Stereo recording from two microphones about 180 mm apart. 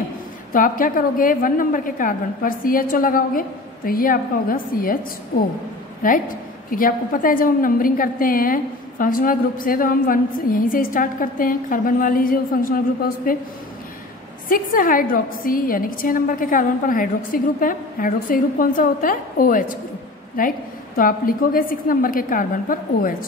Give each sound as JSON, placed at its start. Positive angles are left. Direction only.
{"t": 0.5, "sound": "a woman's voice", "side_deg": 50}
{"t": 6.0, "sound": "a woman's voice", "side_deg": 50}
{"t": 14.5, "sound": "a woman's voice", "side_deg": 50}